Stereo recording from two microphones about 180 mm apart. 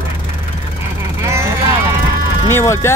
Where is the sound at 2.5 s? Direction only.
15° left (ahead or behind).